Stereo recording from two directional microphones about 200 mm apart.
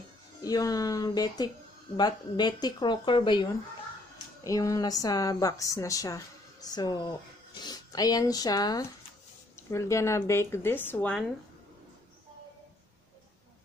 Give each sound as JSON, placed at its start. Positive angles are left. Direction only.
{"t": 0.4, "sound": "speech", "side_deg": 15}
{"t": 4.5, "sound": "a woman's voice", "side_deg": 15}